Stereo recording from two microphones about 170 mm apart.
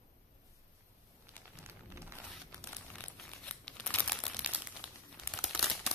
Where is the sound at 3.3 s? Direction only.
5° left (ahead or behind).